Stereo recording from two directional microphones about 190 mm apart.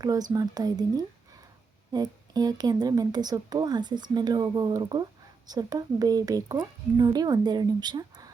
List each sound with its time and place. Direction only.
0.0 s a woman's voice: 20° right (ahead or behind)